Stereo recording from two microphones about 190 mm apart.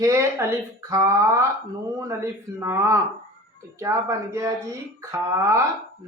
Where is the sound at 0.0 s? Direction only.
15° right (ahead or behind).